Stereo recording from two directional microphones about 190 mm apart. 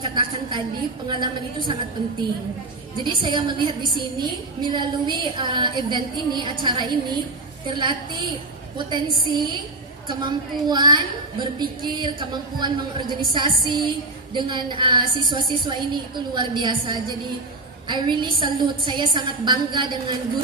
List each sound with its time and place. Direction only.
0.0 s a woman's voice: 25° right (ahead or behind)
3.0 s a woman's voice: 25° right (ahead or behind)
9.3 s a woman's voice: 25° right (ahead or behind)